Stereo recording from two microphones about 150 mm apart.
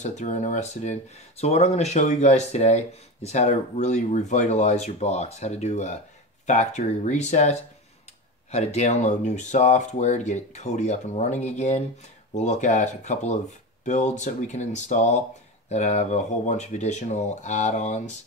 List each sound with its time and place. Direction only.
0.0 s speech: 55° left (ahead or behind)